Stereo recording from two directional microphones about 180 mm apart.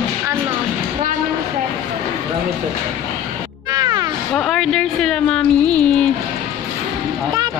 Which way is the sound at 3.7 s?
20° right (ahead or behind).